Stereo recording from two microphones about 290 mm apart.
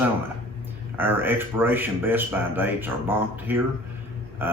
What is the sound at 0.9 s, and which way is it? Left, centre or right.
Speech, centre.